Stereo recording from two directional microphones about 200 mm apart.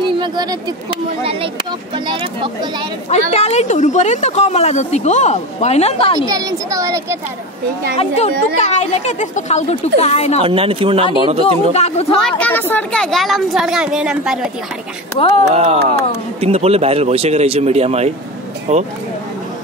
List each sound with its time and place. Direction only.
0.2 s speech: 20° right (ahead or behind)
3.1 s speech: 35° left (ahead or behind)
6.2 s speech: 15° right (ahead or behind)
8.5 s speech: 35° left (ahead or behind)
10.4 s speech: 30° right (ahead or behind)
11.7 s speech: 30° left (ahead or behind)
12.2 s a woman's voice: 5° left (ahead or behind)
15.1 s speech: 30° left (ahead or behind)
15.5 s speech: 35° right (ahead or behind)